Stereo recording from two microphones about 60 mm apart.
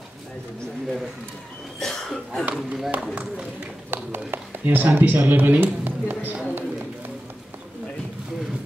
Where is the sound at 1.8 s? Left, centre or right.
Centre.